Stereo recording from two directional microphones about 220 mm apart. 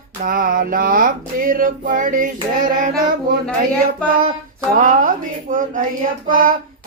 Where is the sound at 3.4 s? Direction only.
5° left (ahead or behind).